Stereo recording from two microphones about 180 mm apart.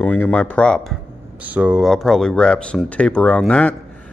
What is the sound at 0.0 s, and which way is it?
Speech, 10° left (ahead or behind).